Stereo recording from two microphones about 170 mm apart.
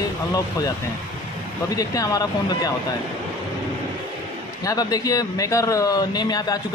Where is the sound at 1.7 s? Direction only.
20° left (ahead or behind).